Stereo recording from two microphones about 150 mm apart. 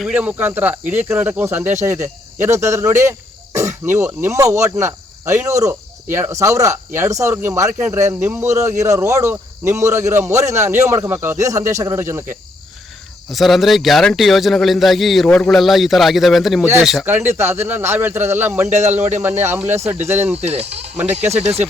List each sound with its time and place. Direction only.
0.0 s a man's voice: 10° right (ahead or behind)
13.3 s a man's voice: centre (ahead or behind)
17.1 s a man's voice: 15° right (ahead or behind)
20.4 s speech: 45° right (ahead or behind)